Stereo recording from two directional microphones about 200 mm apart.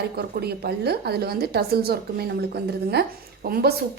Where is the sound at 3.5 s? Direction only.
50° right (ahead or behind).